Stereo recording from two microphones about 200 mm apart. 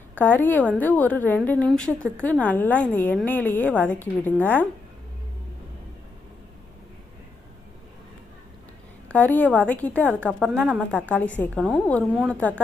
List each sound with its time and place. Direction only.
0.2 s a woman's voice: 10° left (ahead or behind)
9.0 s a woman's voice: 5° left (ahead or behind)